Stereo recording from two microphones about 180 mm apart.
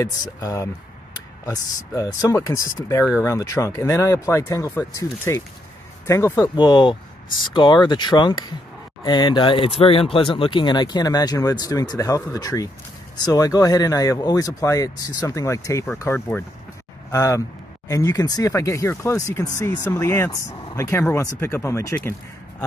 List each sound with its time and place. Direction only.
0.0 s speech: 20° left (ahead or behind)
2.0 s speech: 15° left (ahead or behind)